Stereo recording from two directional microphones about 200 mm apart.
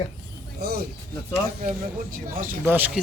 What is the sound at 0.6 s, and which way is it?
Speech, 50° right (ahead or behind).